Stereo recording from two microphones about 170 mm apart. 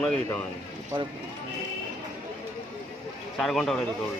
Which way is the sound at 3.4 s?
Centre (ahead or behind).